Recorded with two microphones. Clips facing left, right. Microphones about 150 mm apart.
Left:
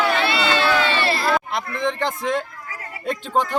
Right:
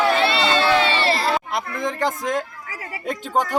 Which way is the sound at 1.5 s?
10° right (ahead or behind).